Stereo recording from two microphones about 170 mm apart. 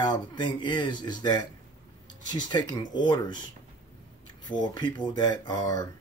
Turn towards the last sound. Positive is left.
turn(degrees=25)  # may be behind; listen again after turning